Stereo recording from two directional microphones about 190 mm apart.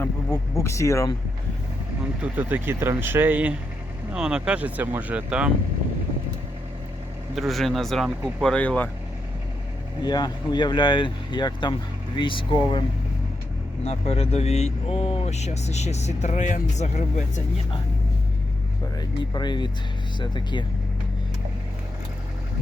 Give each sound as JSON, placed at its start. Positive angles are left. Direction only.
{"t": 0.0, "sound": "speech", "side_deg": 15}
{"t": 2.2, "sound": "speech", "side_deg": -10}
{"t": 7.3, "sound": "speech", "side_deg": 0}
{"t": 10.0, "sound": "speech", "side_deg": 20}
{"t": 13.8, "sound": "speech", "side_deg": 30}
{"t": 18.9, "sound": "speech", "side_deg": 25}